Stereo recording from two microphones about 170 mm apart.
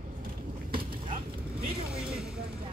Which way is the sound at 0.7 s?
30° right (ahead or behind).